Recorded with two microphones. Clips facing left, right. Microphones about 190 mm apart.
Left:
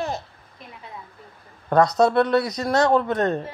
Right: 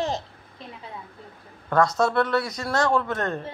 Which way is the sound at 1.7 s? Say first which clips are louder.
Left 4 dB; 20° left (ahead or behind).